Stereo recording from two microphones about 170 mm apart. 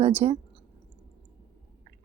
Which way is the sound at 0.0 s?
40° right (ahead or behind).